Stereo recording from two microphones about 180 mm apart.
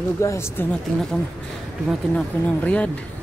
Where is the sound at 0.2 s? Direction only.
15° left (ahead or behind).